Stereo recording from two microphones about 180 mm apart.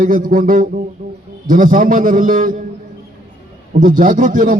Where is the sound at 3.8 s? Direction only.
50° right (ahead or behind).